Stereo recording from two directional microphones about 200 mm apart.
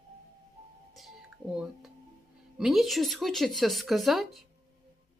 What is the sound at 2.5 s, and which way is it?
Speech, centre (ahead or behind).